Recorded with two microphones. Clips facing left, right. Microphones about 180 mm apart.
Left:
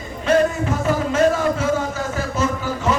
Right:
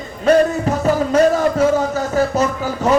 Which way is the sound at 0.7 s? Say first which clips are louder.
Right 5 dB; 40° right (ahead or behind).